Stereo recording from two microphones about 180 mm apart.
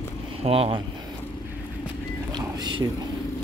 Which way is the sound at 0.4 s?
30° right (ahead or behind).